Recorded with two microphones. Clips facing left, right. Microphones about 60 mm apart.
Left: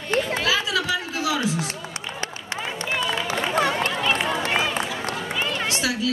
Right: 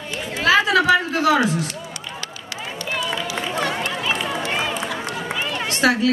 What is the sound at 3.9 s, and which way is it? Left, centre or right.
Run, centre.